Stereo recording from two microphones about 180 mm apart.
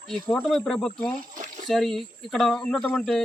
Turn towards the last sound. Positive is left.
turn(degrees=5)  # may be behind; listen again after turning